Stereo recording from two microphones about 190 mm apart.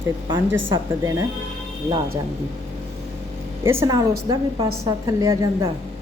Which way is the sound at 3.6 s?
15° right (ahead or behind).